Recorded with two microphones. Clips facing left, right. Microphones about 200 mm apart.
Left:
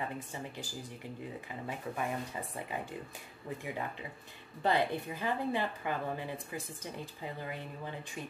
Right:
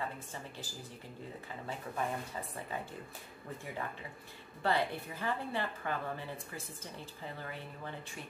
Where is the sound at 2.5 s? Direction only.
15° left (ahead or behind).